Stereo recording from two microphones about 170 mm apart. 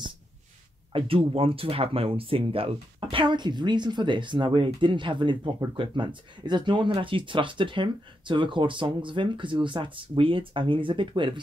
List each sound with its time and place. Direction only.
0.9 s speech: 35° right (ahead or behind)